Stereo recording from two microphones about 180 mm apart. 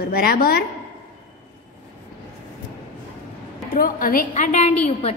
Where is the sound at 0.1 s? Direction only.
55° left (ahead or behind).